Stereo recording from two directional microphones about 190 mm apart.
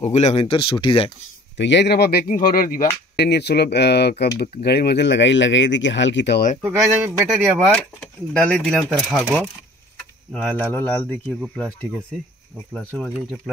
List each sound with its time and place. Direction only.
0.0 s speech: 35° left (ahead or behind)
1.6 s speech: 65° left (ahead or behind); by 2.9 s 50° left (ahead or behind)
3.2 s speech: 60° left (ahead or behind)
6.6 s speech: 15° right (ahead or behind)
7.2 s speech: centre (ahead or behind)